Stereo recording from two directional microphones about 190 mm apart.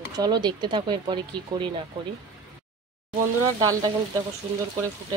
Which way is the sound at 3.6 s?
20° right (ahead or behind).